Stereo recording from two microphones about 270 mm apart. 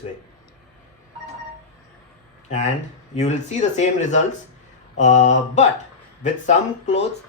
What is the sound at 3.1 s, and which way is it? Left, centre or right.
Speech, left.